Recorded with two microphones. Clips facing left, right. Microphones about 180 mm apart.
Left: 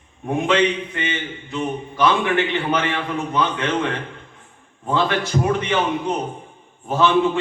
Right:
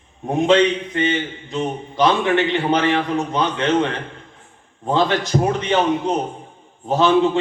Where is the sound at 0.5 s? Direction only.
35° right (ahead or behind).